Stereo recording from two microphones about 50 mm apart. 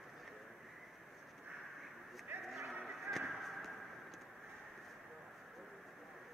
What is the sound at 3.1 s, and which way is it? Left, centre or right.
Honk, centre.